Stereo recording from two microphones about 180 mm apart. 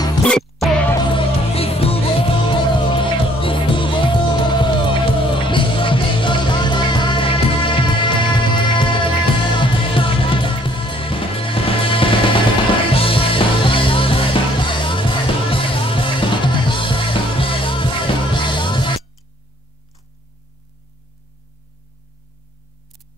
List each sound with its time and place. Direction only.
0.3 s music: 5° left (ahead or behind)
1.0 s music: 30° left (ahead or behind)